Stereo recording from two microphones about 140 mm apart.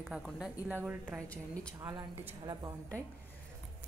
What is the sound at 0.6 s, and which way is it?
A woman's voice, 10° right (ahead or behind).